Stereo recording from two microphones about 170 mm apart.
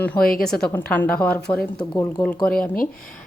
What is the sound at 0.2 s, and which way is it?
Speech, 60° left (ahead or behind).